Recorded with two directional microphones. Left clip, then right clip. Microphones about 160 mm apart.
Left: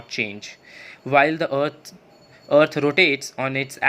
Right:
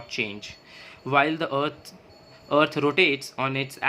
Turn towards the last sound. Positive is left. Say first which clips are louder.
# left 3 dB
turn(degrees=25)  # may be behind; listen again after turning